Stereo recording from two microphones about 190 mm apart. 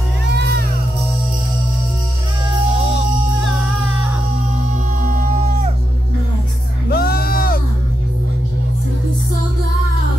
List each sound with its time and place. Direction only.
0.4 s music: 55° right (ahead or behind)
5.0 s music: 45° right (ahead or behind)
6.9 s music: 55° left (ahead or behind)